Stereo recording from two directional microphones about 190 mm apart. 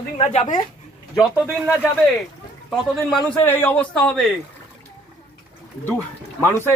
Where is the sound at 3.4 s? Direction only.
10° left (ahead or behind).